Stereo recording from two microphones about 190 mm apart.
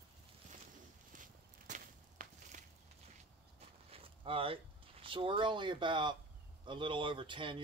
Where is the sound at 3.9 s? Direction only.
30° right (ahead or behind).